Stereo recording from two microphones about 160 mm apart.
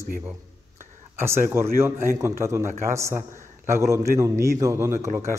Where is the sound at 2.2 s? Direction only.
15° right (ahead or behind).